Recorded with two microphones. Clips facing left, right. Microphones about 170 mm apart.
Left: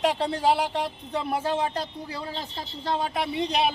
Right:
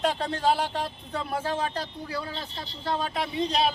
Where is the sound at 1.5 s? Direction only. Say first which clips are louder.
Left 2 dB; 20° left (ahead or behind).